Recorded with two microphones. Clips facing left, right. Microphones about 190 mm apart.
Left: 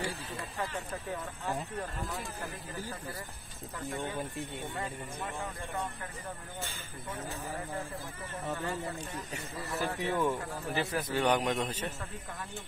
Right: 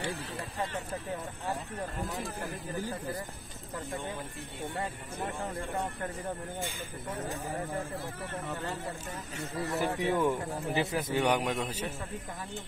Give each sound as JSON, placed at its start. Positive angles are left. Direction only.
{"t": 9.7, "sound": "speech", "side_deg": -20}
{"t": 11.2, "sound": "a man's voice", "side_deg": -10}